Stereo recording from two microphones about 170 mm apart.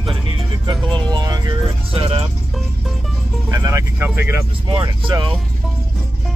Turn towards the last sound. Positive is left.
turn(degrees=-30)  # may be behind; listen again after turning